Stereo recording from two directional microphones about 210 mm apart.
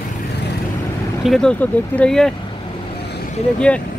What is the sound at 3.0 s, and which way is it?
Vehicle, 50° left (ahead or behind).